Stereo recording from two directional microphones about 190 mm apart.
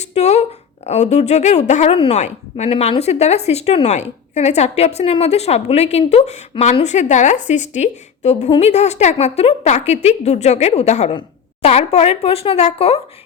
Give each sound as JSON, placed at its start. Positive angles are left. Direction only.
{"t": 0.0, "sound": "a woman's voice", "side_deg": 35}